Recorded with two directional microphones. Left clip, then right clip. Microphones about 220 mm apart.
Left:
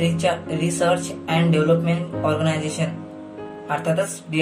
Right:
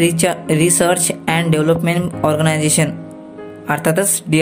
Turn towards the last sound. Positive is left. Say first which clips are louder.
# right 6 dB
turn(degrees=-50)  # may be behind; listen again after turning